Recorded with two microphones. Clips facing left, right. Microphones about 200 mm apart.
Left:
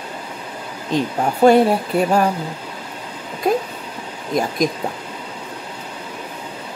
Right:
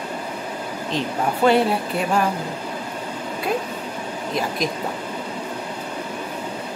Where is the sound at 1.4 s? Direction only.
40° left (ahead or behind).